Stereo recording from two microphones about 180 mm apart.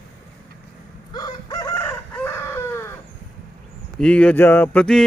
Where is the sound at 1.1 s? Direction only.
15° left (ahead or behind).